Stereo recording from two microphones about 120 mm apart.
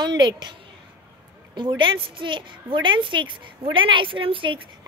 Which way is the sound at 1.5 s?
45° right (ahead or behind).